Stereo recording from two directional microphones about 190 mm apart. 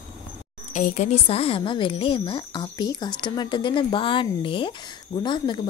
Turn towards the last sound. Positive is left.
turn(degrees=25)  # may be behind; listen again after turning